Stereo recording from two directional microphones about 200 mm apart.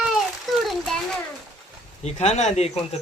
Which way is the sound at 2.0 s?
35° left (ahead or behind).